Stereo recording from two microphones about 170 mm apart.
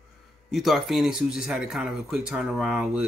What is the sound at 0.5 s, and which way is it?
Speech, centre (ahead or behind).